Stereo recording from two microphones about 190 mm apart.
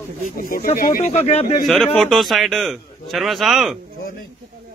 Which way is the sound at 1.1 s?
35° left (ahead or behind).